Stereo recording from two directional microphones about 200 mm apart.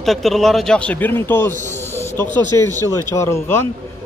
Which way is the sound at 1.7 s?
10° left (ahead or behind).